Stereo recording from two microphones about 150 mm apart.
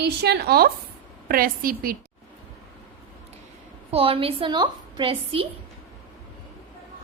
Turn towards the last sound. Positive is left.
turn(degrees=-35)  # may be behind; listen again after turning